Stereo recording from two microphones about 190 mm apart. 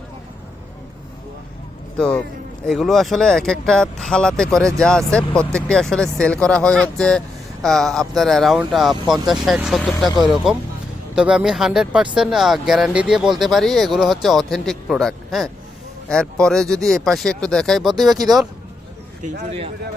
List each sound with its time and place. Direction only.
2.0 s speech: 5° left (ahead or behind)
11.1 s speech: 5° right (ahead or behind)
19.2 s speech: 40° right (ahead or behind)